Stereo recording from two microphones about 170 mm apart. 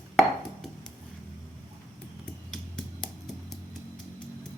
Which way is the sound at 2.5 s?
Centre (ahead or behind).